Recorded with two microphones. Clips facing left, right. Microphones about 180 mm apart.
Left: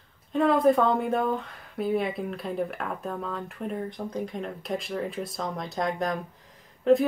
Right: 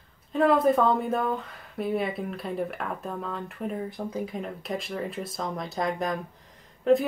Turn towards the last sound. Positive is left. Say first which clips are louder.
# left 1 dB
turn(degrees=0)  # may be behind; listen again after turning